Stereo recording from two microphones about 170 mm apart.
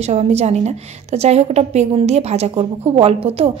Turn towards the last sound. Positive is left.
turn(degrees=-35)  # may be behind; listen again after turning